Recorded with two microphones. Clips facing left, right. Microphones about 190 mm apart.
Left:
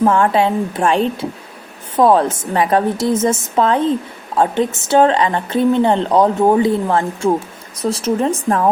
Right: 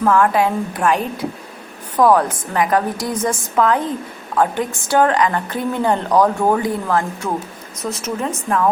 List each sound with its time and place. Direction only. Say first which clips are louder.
0.0 s a woman's voice: left 2 dB; 25° left (ahead or behind)